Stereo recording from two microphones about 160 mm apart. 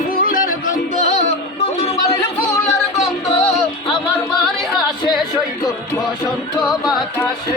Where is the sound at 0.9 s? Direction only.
45° left (ahead or behind).